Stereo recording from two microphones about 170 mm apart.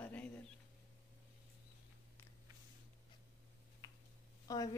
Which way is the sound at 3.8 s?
25° left (ahead or behind).